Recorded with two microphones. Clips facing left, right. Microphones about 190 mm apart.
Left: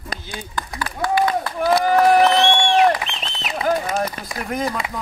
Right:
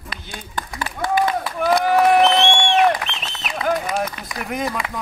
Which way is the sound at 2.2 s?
10° left (ahead or behind).